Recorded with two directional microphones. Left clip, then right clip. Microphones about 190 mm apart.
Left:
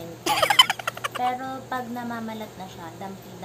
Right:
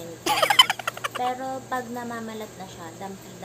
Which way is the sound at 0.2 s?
Centre (ahead or behind).